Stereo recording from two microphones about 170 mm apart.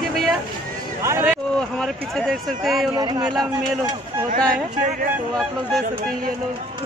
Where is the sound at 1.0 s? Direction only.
15° right (ahead or behind).